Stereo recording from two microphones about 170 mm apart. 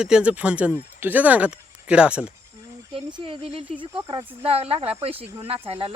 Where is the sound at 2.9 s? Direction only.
30° right (ahead or behind).